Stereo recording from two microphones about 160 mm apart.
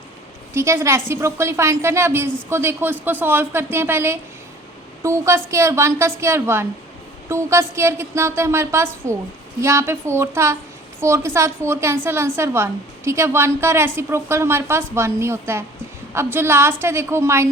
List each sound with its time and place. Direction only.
0.5 s a woman's voice: 15° right (ahead or behind)